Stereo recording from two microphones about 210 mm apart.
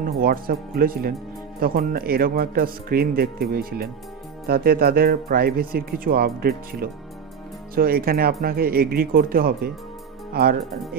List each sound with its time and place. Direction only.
0.0 s speech: 45° right (ahead or behind)